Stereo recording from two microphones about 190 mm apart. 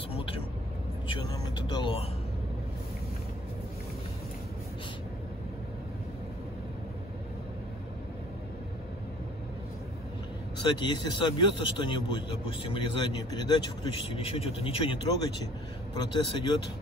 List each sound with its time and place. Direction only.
1.0 s speech: 25° left (ahead or behind)
10.6 s speech: 25° left (ahead or behind)